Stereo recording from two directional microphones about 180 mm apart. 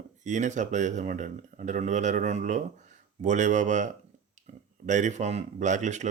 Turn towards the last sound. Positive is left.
turn(degrees=-40)  # may be behind; listen again after turning